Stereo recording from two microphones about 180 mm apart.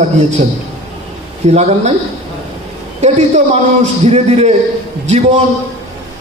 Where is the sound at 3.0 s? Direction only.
40° right (ahead or behind).